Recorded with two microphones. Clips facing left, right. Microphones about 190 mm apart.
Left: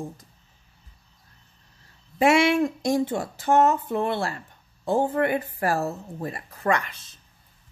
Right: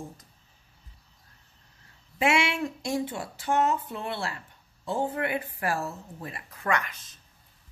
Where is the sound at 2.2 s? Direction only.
40° left (ahead or behind).